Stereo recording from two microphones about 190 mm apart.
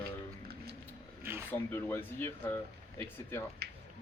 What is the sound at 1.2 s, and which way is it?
Speech, 10° right (ahead or behind).